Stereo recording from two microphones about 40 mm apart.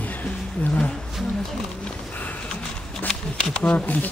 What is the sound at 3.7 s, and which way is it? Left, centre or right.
Speech, left.